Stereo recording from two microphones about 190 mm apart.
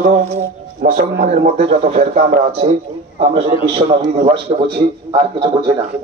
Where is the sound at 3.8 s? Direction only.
30° right (ahead or behind).